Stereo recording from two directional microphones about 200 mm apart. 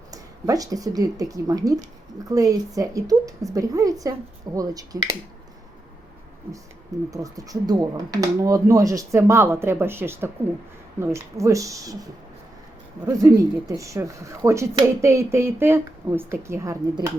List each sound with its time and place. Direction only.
0.1 s speech: 20° right (ahead or behind)
7.1 s speech: 15° right (ahead or behind)
13.1 s speech: 15° right (ahead or behind)